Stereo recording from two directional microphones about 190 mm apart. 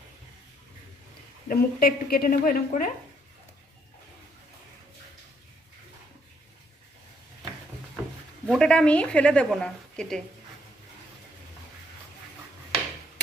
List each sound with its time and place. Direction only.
1.5 s a woman's voice: 55° left (ahead or behind)
8.4 s a woman's voice: 5° left (ahead or behind)